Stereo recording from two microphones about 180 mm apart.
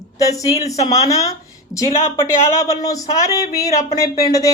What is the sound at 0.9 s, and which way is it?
Speech, 20° left (ahead or behind).